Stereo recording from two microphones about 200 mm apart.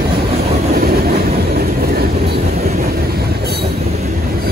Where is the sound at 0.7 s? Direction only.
50° right (ahead or behind).